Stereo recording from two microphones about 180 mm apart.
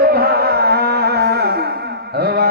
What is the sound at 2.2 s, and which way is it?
Carnatic music, 60° right (ahead or behind).